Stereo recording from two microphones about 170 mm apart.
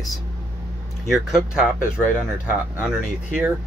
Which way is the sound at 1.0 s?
Centre (ahead or behind).